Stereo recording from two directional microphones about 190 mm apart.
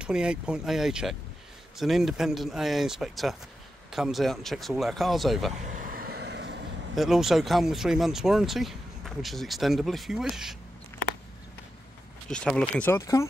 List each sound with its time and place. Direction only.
0.0 s speech: 5° right (ahead or behind)
5.6 s vehicle: 45° right (ahead or behind); by 6.6 s 65° right (ahead or behind)
7.0 s speech: centre (ahead or behind)
12.3 s speech: 5° left (ahead or behind)